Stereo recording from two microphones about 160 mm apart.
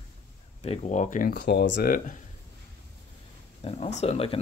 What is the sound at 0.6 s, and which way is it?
Speech, 40° left (ahead or behind).